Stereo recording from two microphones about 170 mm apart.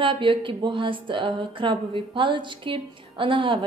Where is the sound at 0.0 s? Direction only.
30° right (ahead or behind).